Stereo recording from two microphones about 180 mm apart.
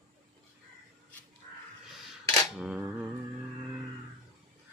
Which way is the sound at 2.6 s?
5° right (ahead or behind).